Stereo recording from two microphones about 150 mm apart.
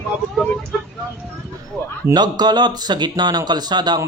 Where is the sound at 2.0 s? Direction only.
25° right (ahead or behind).